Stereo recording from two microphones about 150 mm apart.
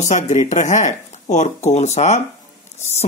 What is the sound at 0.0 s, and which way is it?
Speech, 50° left (ahead or behind).